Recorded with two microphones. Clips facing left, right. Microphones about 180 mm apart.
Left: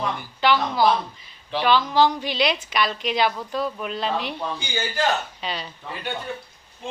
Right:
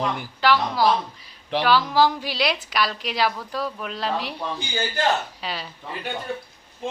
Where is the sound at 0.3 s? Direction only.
Centre (ahead or behind).